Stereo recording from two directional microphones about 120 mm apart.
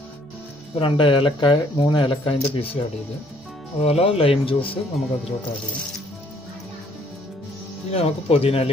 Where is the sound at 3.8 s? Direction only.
55° left (ahead or behind).